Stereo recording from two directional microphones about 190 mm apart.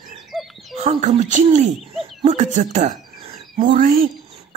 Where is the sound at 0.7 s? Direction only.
35° right (ahead or behind).